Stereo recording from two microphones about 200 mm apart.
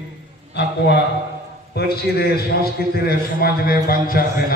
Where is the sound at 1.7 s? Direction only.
50° left (ahead or behind).